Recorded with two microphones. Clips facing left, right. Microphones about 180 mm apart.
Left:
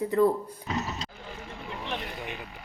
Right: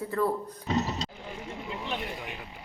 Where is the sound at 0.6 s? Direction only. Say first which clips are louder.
Right 4 dB; 30° right (ahead or behind).